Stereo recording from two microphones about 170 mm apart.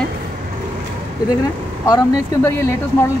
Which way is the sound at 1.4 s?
20° left (ahead or behind).